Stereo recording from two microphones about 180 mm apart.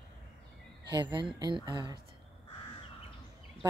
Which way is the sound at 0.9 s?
25° right (ahead or behind).